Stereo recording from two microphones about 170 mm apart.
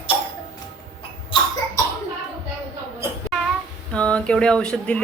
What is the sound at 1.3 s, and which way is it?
Cough, 30° left (ahead or behind).